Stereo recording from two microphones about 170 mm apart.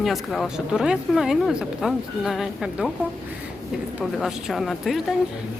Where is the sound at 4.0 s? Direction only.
5° right (ahead or behind).